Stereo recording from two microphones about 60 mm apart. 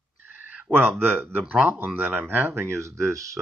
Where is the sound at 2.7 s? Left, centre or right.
Right.